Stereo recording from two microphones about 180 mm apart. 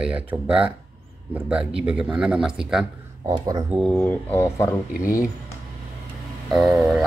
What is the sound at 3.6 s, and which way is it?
Speech, centre (ahead or behind).